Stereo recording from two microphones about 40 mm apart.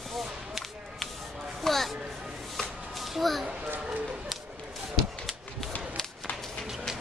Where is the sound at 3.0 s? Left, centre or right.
Centre.